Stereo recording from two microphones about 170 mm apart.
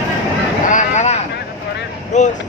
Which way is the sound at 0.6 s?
45° left (ahead or behind).